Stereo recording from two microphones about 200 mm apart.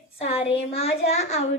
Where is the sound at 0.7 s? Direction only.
30° left (ahead or behind).